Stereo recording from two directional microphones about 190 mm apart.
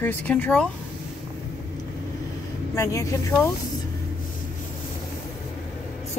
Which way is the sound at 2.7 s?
15° left (ahead or behind).